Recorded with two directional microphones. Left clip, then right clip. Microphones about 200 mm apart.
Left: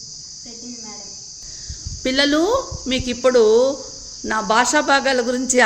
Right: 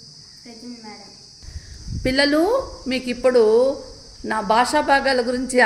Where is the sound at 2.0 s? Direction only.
Centre (ahead or behind).